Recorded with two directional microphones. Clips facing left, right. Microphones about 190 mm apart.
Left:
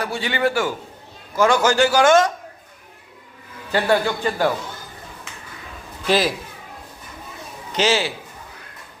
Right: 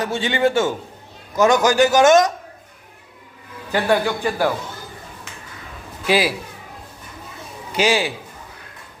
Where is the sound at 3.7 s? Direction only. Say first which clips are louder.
Even; 10° right (ahead or behind).